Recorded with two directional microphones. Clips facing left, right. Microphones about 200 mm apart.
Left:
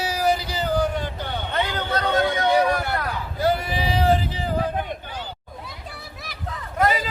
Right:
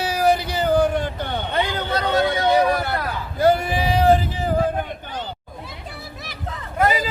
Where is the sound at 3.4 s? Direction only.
50° right (ahead or behind).